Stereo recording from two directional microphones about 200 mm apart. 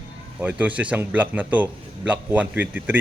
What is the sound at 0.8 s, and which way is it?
A man's voice, 5° right (ahead or behind).